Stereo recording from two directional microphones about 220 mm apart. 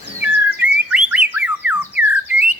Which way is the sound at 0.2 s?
5° right (ahead or behind).